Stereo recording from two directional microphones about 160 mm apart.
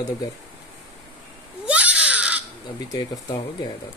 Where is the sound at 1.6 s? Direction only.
10° right (ahead or behind).